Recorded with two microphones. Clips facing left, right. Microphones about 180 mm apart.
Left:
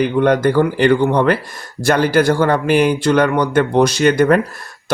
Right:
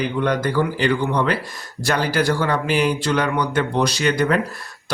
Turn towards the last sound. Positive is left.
turn(degrees=50)  # may be behind; listen again after turning